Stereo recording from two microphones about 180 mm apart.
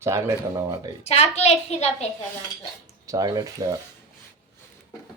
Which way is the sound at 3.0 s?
20° right (ahead or behind).